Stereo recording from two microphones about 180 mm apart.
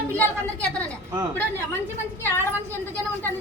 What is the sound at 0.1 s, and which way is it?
Speech, 10° left (ahead or behind).